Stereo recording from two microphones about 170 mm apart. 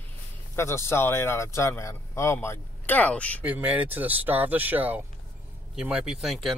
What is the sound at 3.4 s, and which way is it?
Speech, 10° right (ahead or behind).